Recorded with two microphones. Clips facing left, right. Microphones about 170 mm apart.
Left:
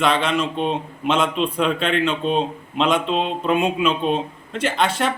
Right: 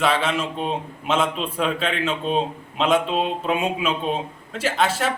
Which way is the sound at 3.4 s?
5° right (ahead or behind).